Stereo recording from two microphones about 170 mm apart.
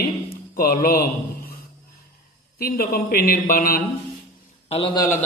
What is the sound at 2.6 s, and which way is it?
A man's voice, 60° left (ahead or behind).